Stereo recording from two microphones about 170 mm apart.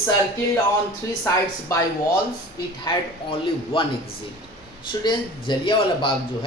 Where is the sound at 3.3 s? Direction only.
30° left (ahead or behind).